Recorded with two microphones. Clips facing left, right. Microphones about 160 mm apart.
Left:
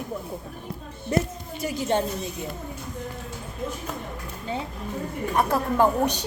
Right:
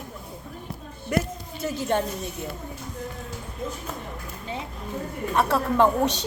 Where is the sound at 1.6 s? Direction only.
15° left (ahead or behind).